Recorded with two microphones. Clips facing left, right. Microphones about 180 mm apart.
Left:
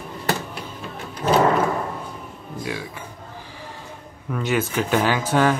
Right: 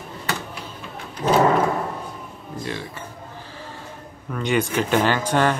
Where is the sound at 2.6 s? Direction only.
5° left (ahead or behind).